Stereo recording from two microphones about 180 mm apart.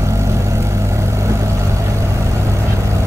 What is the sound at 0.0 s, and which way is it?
Vehicle, 15° right (ahead or behind).